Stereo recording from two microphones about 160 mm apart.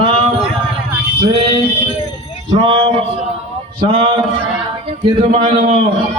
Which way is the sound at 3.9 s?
40° right (ahead or behind).